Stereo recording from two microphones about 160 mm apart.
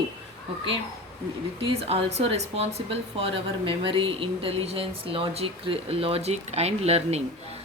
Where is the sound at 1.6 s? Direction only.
35° right (ahead or behind).